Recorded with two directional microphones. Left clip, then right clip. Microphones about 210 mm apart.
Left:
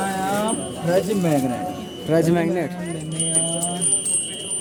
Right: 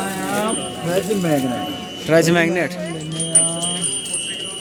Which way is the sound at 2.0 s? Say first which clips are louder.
Right 4 dB; 5° left (ahead or behind).